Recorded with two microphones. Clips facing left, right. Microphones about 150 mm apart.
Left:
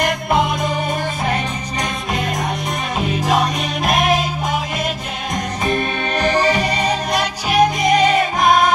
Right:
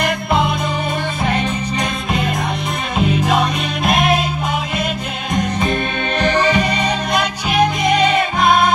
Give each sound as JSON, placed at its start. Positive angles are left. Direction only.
{"t": 3.0, "sound": "music", "side_deg": 40}
{"t": 5.3, "sound": "music", "side_deg": 40}